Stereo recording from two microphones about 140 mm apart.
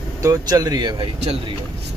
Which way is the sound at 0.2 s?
25° right (ahead or behind).